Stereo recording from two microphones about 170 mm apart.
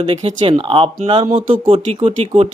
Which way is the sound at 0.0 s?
35° right (ahead or behind).